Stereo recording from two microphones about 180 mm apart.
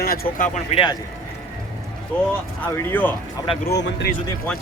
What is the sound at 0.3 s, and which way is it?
Speech, 45° left (ahead or behind).